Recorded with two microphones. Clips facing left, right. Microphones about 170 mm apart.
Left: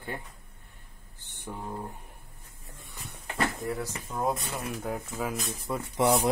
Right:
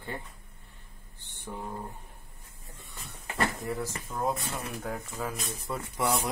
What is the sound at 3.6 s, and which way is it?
Speech, centre (ahead or behind).